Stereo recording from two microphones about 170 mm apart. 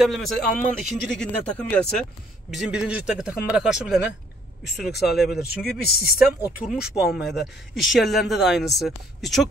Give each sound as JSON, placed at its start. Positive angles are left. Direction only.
{"t": 0.0, "sound": "speech", "side_deg": 0}
{"t": 0.5, "sound": "speech", "side_deg": 50}
{"t": 0.8, "sound": "speech", "side_deg": 5}
{"t": 2.5, "sound": "speech", "side_deg": -5}
{"t": 5.0, "sound": "speech", "side_deg": 0}
{"t": 5.6, "sound": "speech", "side_deg": 65}
{"t": 6.1, "sound": "speech", "side_deg": -10}